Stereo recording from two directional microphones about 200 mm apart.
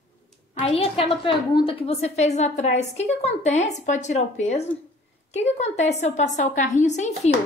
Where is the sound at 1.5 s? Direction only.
25° left (ahead or behind).